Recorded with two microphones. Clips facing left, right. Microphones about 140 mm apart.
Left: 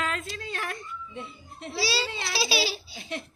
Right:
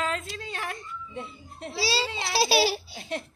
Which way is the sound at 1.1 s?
35° right (ahead or behind).